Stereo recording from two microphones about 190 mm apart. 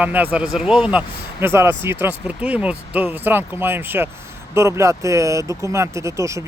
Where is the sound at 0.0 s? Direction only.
10° right (ahead or behind).